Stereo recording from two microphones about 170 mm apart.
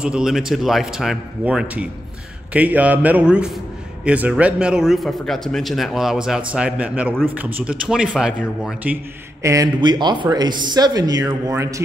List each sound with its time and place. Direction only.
0.0 s a man's voice: 5° right (ahead or behind)
9.4 s speech: 20° right (ahead or behind)